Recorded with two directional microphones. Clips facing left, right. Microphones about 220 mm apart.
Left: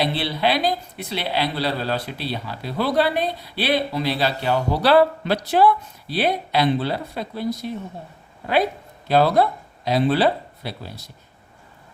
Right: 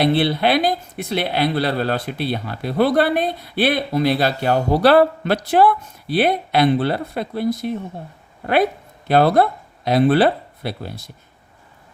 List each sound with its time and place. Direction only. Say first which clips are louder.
0.0 s a man's voice: right 5 dB; 50° right (ahead or behind)
9.0 s speech: right 2 dB; 55° right (ahead or behind)